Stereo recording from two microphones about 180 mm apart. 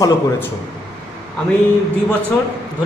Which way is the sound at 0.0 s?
20° left (ahead or behind).